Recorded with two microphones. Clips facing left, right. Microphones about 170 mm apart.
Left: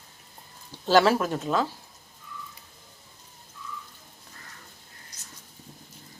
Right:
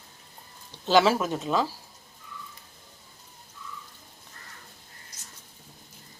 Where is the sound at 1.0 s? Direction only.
Centre (ahead or behind).